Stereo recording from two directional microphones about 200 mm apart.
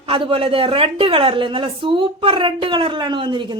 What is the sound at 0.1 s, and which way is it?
A woman's voice, 25° right (ahead or behind).